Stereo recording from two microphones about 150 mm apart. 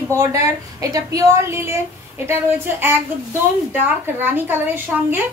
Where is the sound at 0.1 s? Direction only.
20° right (ahead or behind).